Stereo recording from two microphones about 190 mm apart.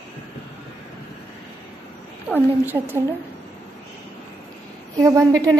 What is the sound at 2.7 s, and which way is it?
Speech, 10° right (ahead or behind).